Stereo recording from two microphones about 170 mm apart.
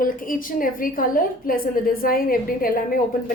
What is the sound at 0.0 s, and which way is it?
A woman's voice, 55° left (ahead or behind).